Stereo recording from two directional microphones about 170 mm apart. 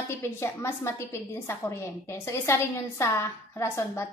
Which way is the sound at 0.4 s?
15° left (ahead or behind).